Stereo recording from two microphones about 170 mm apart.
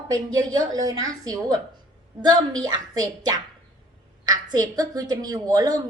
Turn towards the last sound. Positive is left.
turn(degrees=-20)  # may be behind; listen again after turning